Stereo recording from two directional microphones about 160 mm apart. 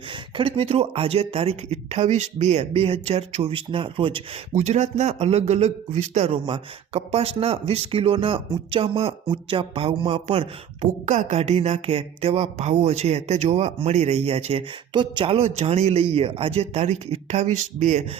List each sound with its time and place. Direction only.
0.1 s speech: 35° right (ahead or behind)
4.5 s speech: 45° right (ahead or behind)